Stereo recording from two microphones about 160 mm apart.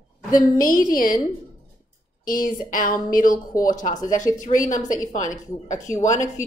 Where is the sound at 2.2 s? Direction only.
60° left (ahead or behind).